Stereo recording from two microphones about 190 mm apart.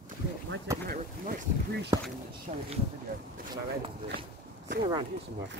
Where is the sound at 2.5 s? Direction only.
40° right (ahead or behind).